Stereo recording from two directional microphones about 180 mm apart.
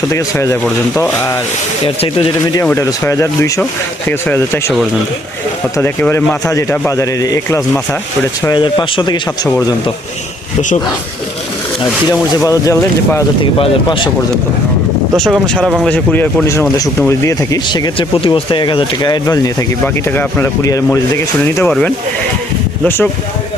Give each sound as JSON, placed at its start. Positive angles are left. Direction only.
{"t": 0.1, "sound": "speech", "side_deg": 15}
{"t": 1.8, "sound": "speech", "side_deg": 30}
{"t": 2.6, "sound": "speech", "side_deg": 15}
{"t": 5.7, "sound": "speech", "side_deg": 15}
{"t": 12.4, "sound": "speech", "side_deg": 15}
{"t": 13.4, "sound": "speech", "side_deg": 30}
{"t": 15.1, "sound": "speech", "side_deg": 5}
{"t": 21.6, "sound": "speech", "side_deg": 5}